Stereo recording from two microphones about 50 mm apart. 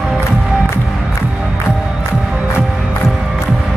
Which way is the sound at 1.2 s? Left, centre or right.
Centre.